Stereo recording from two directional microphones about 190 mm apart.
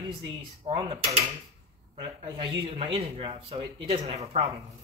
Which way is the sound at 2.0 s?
25° right (ahead or behind).